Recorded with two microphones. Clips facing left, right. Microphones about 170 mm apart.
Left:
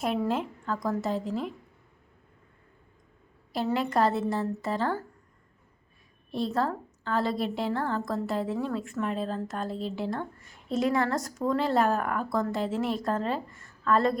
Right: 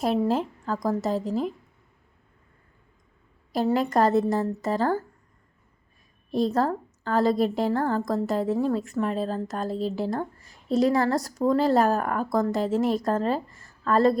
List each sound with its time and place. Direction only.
0.0 s a woman's voice: 35° right (ahead or behind)
3.5 s a woman's voice: 40° right (ahead or behind)
6.3 s a woman's voice: 40° right (ahead or behind)